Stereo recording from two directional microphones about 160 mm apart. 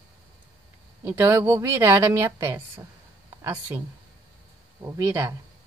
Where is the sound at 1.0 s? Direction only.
15° right (ahead or behind).